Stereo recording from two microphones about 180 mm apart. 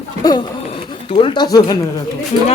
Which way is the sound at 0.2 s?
20° left (ahead or behind).